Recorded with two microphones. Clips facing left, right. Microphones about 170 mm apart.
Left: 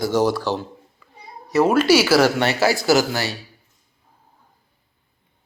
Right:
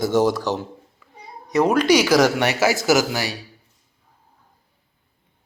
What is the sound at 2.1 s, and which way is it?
Speech, 15° right (ahead or behind).